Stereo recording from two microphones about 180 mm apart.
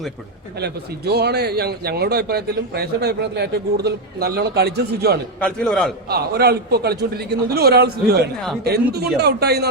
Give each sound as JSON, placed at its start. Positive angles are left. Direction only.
{"t": 0.6, "sound": "speech", "side_deg": -65}
{"t": 5.4, "sound": "a man's voice", "side_deg": 5}
{"t": 6.1, "sound": "speech", "side_deg": -60}